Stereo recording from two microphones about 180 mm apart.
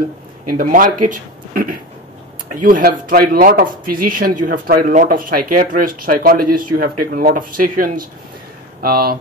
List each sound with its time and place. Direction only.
0.5 s speech: 50° right (ahead or behind)